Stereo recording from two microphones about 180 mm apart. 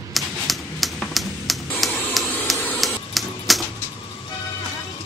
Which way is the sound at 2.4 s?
5° left (ahead or behind).